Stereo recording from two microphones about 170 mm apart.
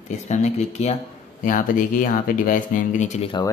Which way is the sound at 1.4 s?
50° left (ahead or behind).